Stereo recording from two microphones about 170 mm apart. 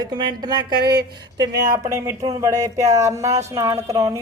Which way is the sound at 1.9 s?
15° right (ahead or behind).